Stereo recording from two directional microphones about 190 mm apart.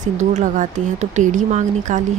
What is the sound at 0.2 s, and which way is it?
Speech, 40° right (ahead or behind).